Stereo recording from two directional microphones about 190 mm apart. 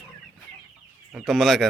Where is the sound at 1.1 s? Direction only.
Centre (ahead or behind).